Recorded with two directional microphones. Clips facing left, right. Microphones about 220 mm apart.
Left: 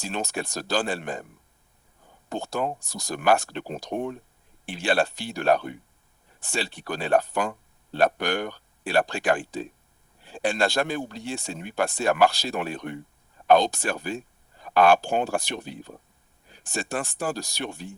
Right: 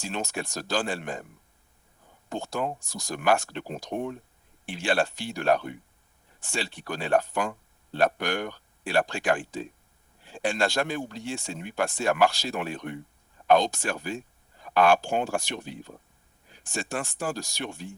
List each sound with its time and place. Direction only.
0.0 s speech: 35° left (ahead or behind)
2.3 s speech: 35° left (ahead or behind)